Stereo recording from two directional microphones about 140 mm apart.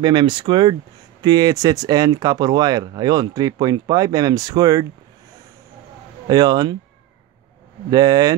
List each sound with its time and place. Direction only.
0.0 s speech: 35° right (ahead or behind)
6.2 s speech: 25° right (ahead or behind)
7.9 s speech: 25° right (ahead or behind)